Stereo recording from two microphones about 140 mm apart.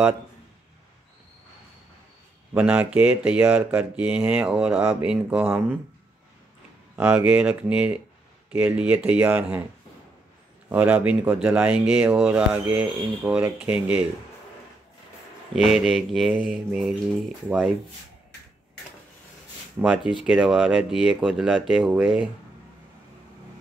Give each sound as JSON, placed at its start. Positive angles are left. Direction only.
{"t": 2.5, "sound": "speech", "side_deg": -10}
{"t": 7.0, "sound": "speech", "side_deg": -10}
{"t": 10.7, "sound": "speech", "side_deg": -10}
{"t": 15.5, "sound": "mantra", "side_deg": -5}
{"t": 19.8, "sound": "mantra", "side_deg": -5}
{"t": 21.5, "sound": "speech", "side_deg": -10}